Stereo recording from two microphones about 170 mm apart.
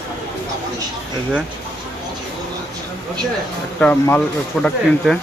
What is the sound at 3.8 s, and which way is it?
Speech, 10° left (ahead or behind).